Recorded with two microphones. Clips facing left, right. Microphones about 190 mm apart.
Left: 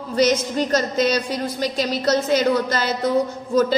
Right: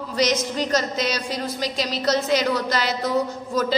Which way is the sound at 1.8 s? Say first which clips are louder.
Left 3 dB; 55° left (ahead or behind).